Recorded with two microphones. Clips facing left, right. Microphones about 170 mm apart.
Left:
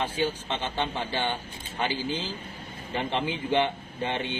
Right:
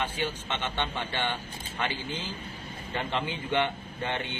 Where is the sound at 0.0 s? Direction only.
30° left (ahead or behind).